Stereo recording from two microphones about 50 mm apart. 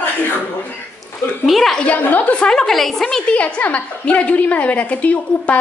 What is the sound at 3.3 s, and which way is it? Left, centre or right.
A woman's voice, left.